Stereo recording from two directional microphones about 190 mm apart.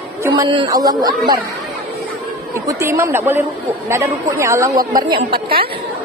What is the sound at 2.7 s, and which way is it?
A woman's voice, 15° right (ahead or behind).